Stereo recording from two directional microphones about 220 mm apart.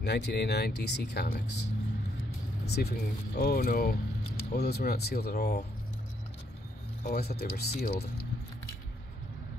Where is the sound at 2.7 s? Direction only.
45° left (ahead or behind).